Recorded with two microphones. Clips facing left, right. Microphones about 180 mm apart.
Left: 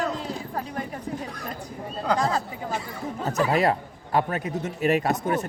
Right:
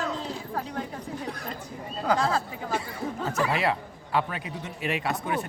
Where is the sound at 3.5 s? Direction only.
45° left (ahead or behind).